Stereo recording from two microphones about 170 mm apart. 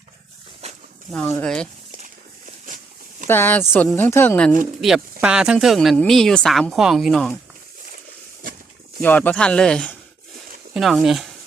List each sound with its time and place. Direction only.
0.6 s a sound: 40° right (ahead or behind)
1.1 s a woman's voice: 5° left (ahead or behind)
2.6 s a sound: 50° right (ahead or behind)
3.2 s speech: 10° left (ahead or behind)
5.2 s a woman's voice: 5° right (ahead or behind)
9.0 s a woman's voice: 10° left (ahead or behind)